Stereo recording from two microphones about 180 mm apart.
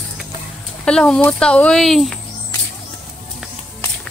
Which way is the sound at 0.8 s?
5° left (ahead or behind).